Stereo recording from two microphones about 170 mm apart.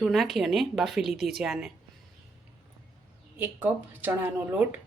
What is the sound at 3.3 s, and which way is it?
Speech, 10° right (ahead or behind).